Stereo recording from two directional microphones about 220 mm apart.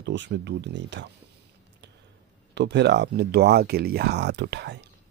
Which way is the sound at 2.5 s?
50° right (ahead or behind).